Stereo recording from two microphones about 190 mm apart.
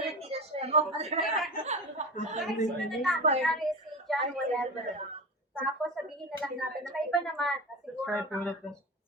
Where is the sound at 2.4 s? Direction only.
Centre (ahead or behind).